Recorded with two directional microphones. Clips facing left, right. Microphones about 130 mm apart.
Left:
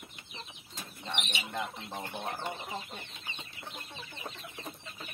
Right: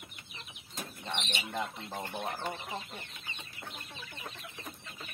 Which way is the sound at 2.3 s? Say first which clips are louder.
Even; 25° left (ahead or behind).